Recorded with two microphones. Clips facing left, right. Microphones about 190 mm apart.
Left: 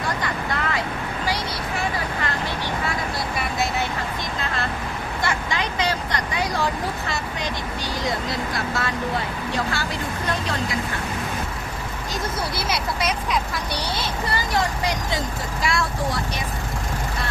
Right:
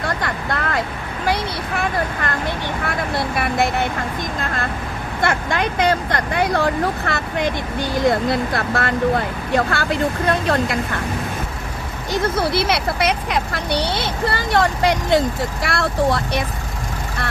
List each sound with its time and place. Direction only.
0.2 s vehicle: 55° right (ahead or behind)
5.2 s speech: 55° right (ahead or behind)
12.1 s speech: 60° right (ahead or behind)